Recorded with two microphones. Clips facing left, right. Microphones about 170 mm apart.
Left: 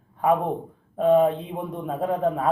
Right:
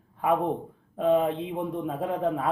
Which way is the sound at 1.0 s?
40° left (ahead or behind).